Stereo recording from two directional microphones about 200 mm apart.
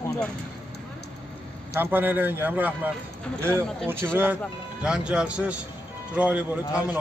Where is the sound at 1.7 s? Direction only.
10° right (ahead or behind).